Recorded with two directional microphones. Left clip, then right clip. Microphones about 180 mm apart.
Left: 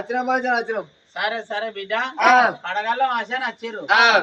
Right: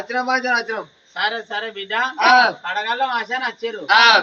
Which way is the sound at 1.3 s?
30° left (ahead or behind).